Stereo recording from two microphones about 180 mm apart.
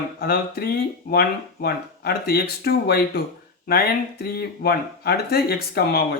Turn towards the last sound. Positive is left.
turn(degrees=60)  # may be behind; listen again after turning